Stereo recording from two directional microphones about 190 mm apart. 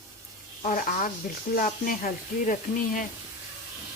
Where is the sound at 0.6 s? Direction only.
45° left (ahead or behind).